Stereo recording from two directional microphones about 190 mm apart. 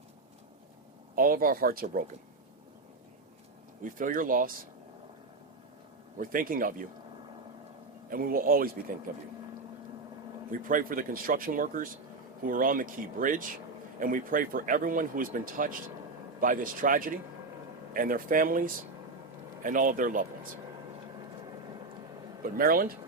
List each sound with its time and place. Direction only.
1.1 s speech: 50° right (ahead or behind)
3.8 s speech: 45° right (ahead or behind)
6.1 s speech: 45° right (ahead or behind)
8.1 s speech: 50° right (ahead or behind)
10.5 s speech: 45° right (ahead or behind)
22.4 s speech: 50° right (ahead or behind)